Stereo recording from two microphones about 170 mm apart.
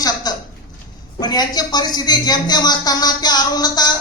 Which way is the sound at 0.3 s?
25° left (ahead or behind).